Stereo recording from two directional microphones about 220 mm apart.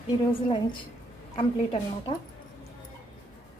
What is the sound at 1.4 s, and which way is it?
Speech, 25° left (ahead or behind).